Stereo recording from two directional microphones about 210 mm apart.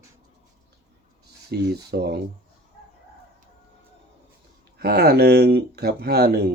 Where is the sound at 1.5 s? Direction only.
50° right (ahead or behind).